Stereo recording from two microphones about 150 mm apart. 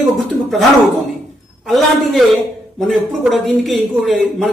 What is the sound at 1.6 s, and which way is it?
Speech, centre (ahead or behind).